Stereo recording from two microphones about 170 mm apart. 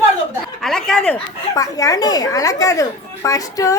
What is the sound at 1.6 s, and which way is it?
A woman's voice, 20° left (ahead or behind).